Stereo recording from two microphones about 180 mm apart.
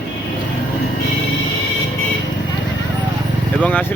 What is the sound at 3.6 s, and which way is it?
Speech, 10° left (ahead or behind).